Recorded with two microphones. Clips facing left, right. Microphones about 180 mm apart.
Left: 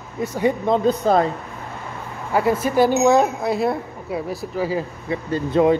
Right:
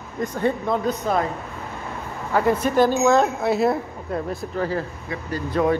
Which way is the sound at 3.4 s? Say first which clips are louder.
Right 1 dB; centre (ahead or behind).